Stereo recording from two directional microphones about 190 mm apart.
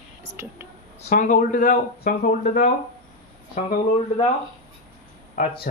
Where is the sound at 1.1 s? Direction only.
45° left (ahead or behind).